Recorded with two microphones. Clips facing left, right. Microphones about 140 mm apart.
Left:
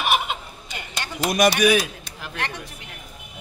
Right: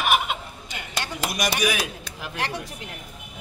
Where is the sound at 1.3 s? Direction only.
55° left (ahead or behind).